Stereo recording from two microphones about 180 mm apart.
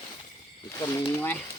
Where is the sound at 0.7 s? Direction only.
20° left (ahead or behind).